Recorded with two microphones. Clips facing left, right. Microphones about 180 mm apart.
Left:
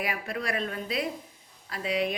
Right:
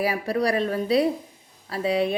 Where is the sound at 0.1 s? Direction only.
35° right (ahead or behind).